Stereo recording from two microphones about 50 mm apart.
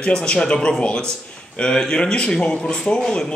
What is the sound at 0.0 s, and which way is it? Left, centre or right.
Speech, centre.